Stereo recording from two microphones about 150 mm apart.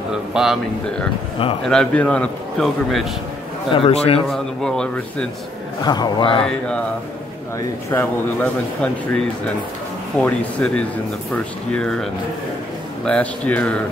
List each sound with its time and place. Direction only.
0.1 s a man's voice: 5° right (ahead or behind)
3.7 s a man's voice: 40° left (ahead or behind)
4.3 s a man's voice: 5° left (ahead or behind)
5.9 s a man's voice: 30° left (ahead or behind)
7.9 s a man's voice: 10° left (ahead or behind)